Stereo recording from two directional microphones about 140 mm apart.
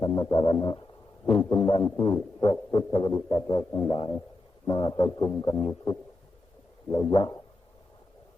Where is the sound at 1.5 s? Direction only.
30° left (ahead or behind).